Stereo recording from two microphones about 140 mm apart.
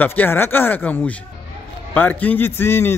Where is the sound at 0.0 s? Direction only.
15° left (ahead or behind).